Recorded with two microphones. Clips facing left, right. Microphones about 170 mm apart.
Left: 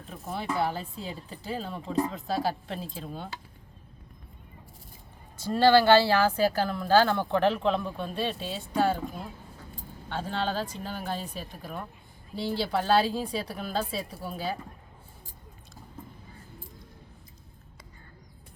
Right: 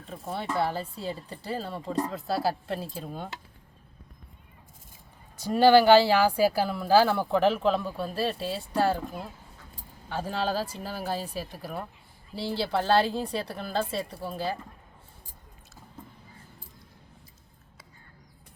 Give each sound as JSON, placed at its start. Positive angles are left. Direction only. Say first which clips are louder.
{"t": 0.3, "sound": "speech", "louder": "right 1 dB", "side_deg": 0}
{"t": 5.4, "sound": "speech", "louder": "right 2 dB", "side_deg": -15}